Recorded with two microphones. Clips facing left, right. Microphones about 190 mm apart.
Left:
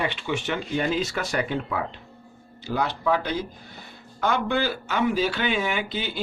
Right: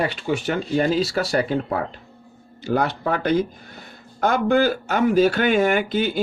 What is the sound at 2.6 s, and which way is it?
Speech, 50° right (ahead or behind).